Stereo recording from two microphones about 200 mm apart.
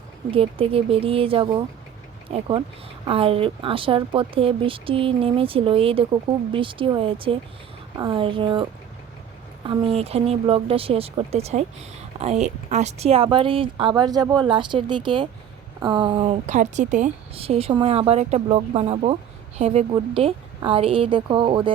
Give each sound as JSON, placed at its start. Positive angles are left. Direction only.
{"t": 0.3, "sound": "speech", "side_deg": -30}
{"t": 9.6, "sound": "speech", "side_deg": -30}